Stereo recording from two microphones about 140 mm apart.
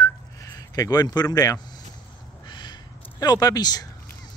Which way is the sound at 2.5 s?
30° left (ahead or behind).